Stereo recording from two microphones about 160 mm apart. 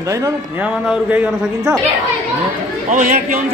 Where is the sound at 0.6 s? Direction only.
10° right (ahead or behind).